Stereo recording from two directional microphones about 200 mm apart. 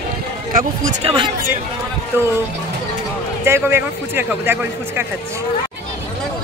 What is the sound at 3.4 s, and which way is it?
Speech, 10° right (ahead or behind).